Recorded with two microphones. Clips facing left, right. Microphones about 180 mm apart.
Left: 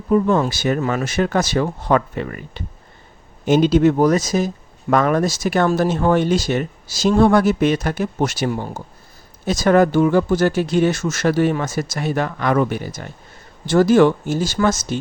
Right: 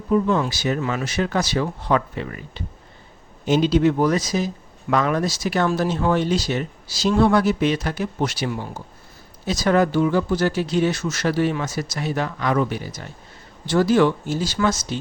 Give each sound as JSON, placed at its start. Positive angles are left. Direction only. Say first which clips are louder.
{"t": 0.1, "sound": "speech", "louder": "left 3 dB", "side_deg": 45}